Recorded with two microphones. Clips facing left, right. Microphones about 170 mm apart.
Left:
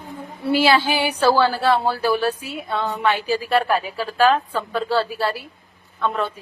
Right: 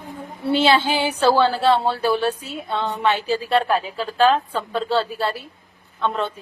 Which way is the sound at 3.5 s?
5° left (ahead or behind).